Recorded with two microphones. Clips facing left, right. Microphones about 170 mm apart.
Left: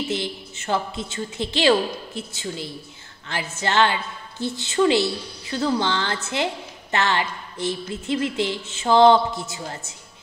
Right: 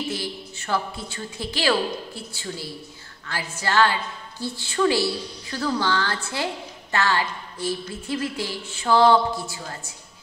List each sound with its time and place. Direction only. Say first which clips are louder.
0.1 s a woman's voice: left 3 dB; 20° left (ahead or behind)